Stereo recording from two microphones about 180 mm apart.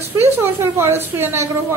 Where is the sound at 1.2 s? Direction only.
15° right (ahead or behind).